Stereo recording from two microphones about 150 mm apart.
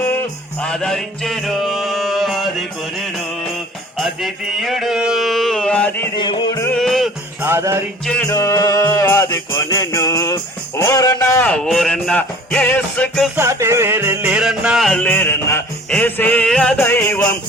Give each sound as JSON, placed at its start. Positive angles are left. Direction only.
{"t": 0.0, "sound": "music", "side_deg": 15}
{"t": 3.9, "sound": "mantra", "side_deg": 0}
{"t": 6.1, "sound": "music", "side_deg": 30}
{"t": 6.7, "sound": "music", "side_deg": 0}
{"t": 7.4, "sound": "music", "side_deg": -15}
{"t": 8.0, "sound": "music", "side_deg": 5}
{"t": 8.3, "sound": "music", "side_deg": 20}
{"t": 11.4, "sound": "music", "side_deg": 5}
{"t": 13.3, "sound": "music", "side_deg": -20}
{"t": 15.0, "sound": "music", "side_deg": 10}